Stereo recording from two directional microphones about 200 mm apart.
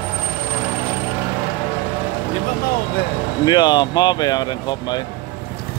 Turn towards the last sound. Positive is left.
turn(degrees=20)  # may be behind; listen again after turning